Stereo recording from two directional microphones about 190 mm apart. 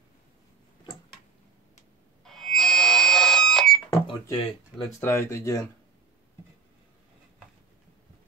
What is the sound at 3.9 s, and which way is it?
Cash register, 20° left (ahead or behind).